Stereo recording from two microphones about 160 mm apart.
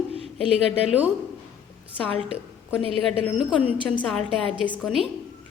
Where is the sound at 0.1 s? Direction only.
40° right (ahead or behind).